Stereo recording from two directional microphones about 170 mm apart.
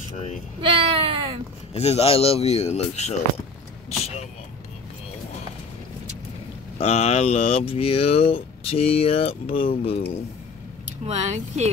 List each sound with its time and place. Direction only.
0.6 s speech: 30° right (ahead or behind)
1.7 s speech: 35° left (ahead or behind)
3.9 s vehicle: 40° left (ahead or behind)
6.8 s speech: 40° left (ahead or behind)
11.1 s speech: 40° right (ahead or behind)